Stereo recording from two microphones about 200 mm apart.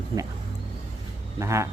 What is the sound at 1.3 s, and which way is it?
Speech, 15° right (ahead or behind).